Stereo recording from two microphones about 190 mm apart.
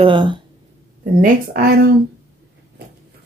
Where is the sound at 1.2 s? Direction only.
50° right (ahead or behind).